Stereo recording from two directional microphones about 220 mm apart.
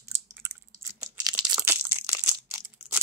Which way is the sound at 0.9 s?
15° right (ahead or behind).